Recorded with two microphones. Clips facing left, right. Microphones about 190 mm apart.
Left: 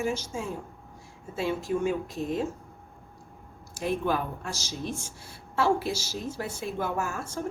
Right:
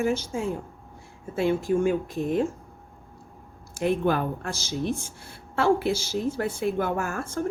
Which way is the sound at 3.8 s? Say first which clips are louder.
Right 4 dB; 60° right (ahead or behind).